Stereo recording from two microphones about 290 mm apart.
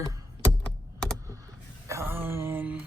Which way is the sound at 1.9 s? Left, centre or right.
Centre.